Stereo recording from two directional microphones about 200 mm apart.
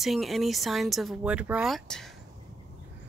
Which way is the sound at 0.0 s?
Centre (ahead or behind).